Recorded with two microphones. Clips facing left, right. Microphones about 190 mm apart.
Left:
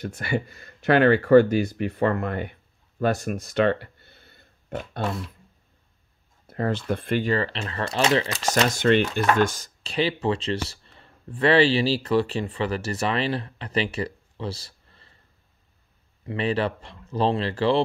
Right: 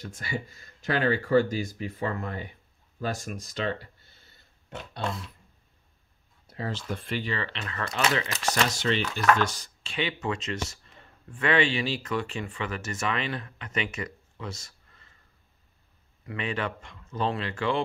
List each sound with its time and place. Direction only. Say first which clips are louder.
0.0 s speech: left 7 dB; 65° left (ahead or behind)
3.0 s a sound: left 8 dB; 65° left (ahead or behind)
6.4 s speech: left 8 dB; 55° left (ahead or behind)
7.5 s speech: left 5 dB; 30° left (ahead or behind)
8.6 s speech: left 8 dB; 55° left (ahead or behind); by 15.1 s 30° left (ahead or behind)
16.3 s speech: left 7 dB; 35° left (ahead or behind)